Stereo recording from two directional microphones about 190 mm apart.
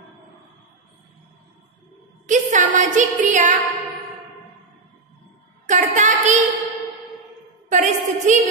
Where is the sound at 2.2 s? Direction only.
40° right (ahead or behind).